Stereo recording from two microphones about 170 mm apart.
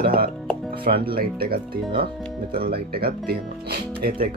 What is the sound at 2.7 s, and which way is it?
Speech, 65° right (ahead or behind).